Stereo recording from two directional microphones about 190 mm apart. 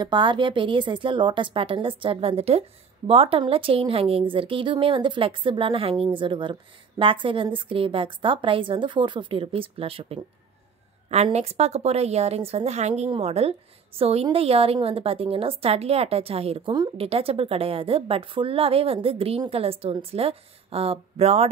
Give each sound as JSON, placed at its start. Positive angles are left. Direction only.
{"t": 0.0, "sound": "a woman's voice", "side_deg": -25}